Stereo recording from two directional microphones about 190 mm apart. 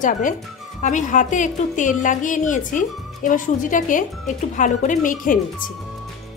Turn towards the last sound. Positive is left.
turn(degrees=45)  # may be behind; listen again after turning